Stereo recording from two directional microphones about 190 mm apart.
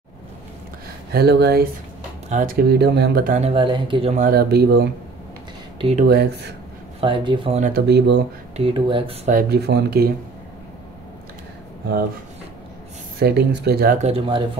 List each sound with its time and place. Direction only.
1.1 s speech: 55° right (ahead or behind)
2.2 s speech: 45° right (ahead or behind)
3.3 s speech: 30° right (ahead or behind)
4.3 s speech: 55° right (ahead or behind)
5.8 s speech: 30° right (ahead or behind)
6.0 s speech: 60° right (ahead or behind)
7.0 s speech: 25° right (ahead or behind)
7.6 s speech: 55° right (ahead or behind)
8.5 s speech: 30° right (ahead or behind); by 10.1 s 55° right (ahead or behind)
13.2 s speech: 60° right (ahead or behind)
13.9 s speech: 35° right (ahead or behind)